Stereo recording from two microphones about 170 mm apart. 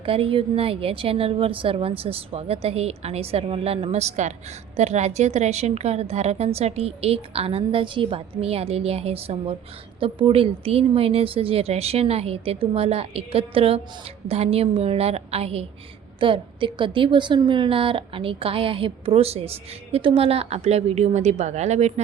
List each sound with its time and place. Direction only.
0.0 s a woman's voice: 35° right (ahead or behind)